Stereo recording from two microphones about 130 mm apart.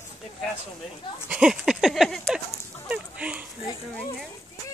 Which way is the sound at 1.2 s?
5° right (ahead or behind).